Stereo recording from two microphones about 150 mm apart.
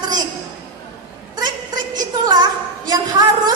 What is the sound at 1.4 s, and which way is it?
A woman's voice, 25° right (ahead or behind).